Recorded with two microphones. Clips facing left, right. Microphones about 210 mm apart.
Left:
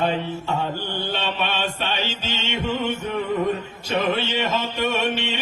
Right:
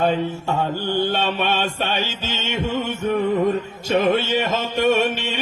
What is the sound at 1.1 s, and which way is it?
Mantra, 45° right (ahead or behind).